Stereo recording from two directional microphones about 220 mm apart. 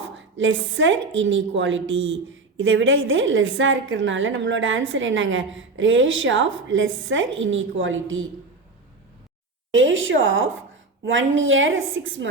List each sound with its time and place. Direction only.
0.2 s a woman's voice: 60° right (ahead or behind)
9.7 s a woman's voice: 60° right (ahead or behind)